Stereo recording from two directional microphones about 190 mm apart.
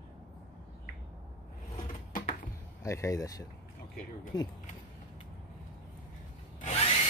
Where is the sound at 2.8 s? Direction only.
15° left (ahead or behind).